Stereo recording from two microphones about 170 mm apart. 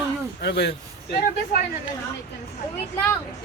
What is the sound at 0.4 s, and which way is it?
Speech, 85° left.